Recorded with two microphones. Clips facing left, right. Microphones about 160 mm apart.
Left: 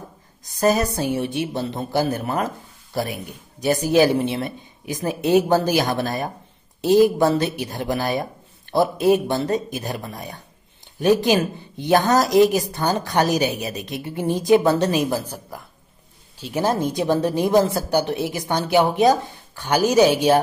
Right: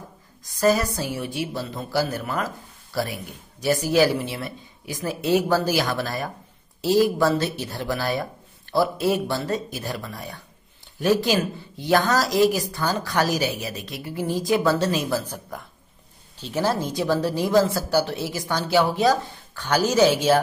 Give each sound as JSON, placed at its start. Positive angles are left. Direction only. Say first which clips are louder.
{"t": 0.6, "sound": "speech", "louder": "left 2 dB", "side_deg": 20}